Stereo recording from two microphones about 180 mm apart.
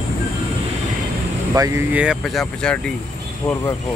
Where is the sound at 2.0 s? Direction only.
Centre (ahead or behind).